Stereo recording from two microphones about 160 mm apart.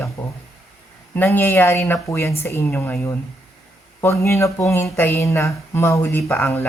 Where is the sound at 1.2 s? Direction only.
15° left (ahead or behind).